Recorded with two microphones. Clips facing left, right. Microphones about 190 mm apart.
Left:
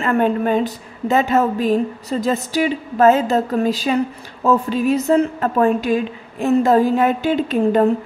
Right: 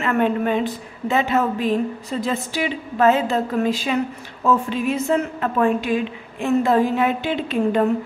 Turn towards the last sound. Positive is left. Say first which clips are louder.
# left 4 dB
turn(degrees=40)  # may be behind; listen again after turning